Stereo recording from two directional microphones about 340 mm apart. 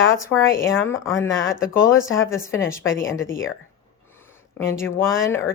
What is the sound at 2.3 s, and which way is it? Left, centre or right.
Speech, centre.